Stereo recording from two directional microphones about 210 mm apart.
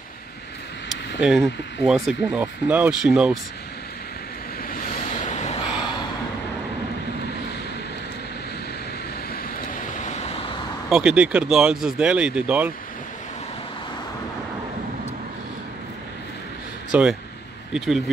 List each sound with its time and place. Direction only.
0.8 s speech: centre (ahead or behind)
5.2 s a sound: 35° left (ahead or behind)
10.9 s speech: 5° right (ahead or behind)
16.9 s speech: 5° right (ahead or behind)